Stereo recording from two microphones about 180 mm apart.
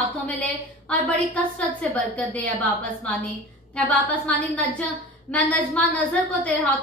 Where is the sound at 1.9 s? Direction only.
10° left (ahead or behind).